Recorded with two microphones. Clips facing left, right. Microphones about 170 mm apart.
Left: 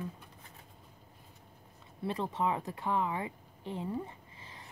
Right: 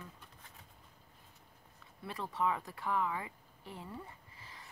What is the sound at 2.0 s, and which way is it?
Speech, 20° left (ahead or behind).